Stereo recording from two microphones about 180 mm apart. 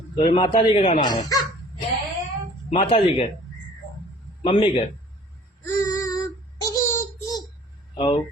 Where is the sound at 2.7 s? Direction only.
30° left (ahead or behind).